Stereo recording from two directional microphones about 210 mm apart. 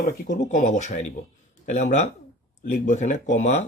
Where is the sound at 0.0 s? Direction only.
35° left (ahead or behind).